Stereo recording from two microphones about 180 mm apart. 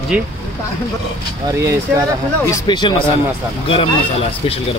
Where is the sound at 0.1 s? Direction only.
5° right (ahead or behind).